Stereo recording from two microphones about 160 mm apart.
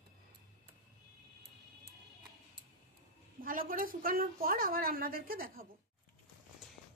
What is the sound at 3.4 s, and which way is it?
A woman's voice, 60° right (ahead or behind).